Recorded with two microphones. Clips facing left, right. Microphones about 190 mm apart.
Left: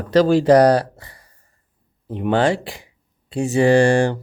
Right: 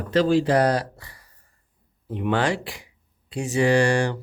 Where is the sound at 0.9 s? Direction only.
25° left (ahead or behind).